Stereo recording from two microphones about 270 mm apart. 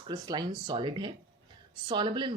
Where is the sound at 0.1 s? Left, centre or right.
Centre.